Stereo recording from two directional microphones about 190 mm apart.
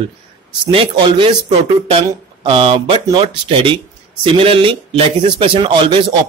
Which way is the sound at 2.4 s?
25° right (ahead or behind).